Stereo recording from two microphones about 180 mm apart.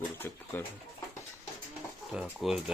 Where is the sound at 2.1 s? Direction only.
5° right (ahead or behind).